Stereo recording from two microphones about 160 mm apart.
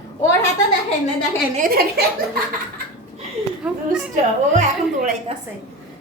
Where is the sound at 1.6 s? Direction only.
70° right (ahead or behind).